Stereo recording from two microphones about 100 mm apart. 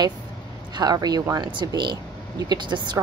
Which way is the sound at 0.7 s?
40° right (ahead or behind).